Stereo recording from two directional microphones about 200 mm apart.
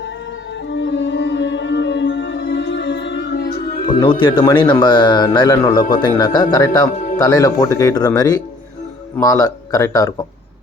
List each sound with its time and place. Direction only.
0.7 s music: 65° left (ahead or behind)
4.0 s speech: 25° left (ahead or behind)
6.9 s music: 40° left (ahead or behind)
7.2 s speech: 15° left (ahead or behind)